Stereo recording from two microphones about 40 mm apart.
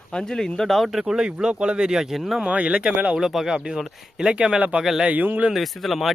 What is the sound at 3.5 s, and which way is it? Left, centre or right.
Speech, right.